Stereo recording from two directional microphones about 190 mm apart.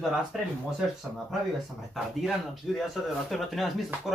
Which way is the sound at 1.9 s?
Centre (ahead or behind).